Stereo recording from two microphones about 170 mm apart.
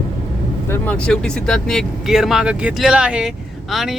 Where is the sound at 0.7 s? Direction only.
5° left (ahead or behind).